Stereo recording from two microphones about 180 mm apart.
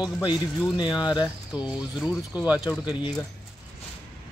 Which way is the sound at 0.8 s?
25° left (ahead or behind).